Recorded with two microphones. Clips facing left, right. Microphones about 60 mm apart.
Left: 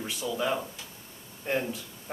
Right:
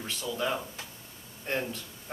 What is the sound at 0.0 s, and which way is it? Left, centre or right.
Speech, centre.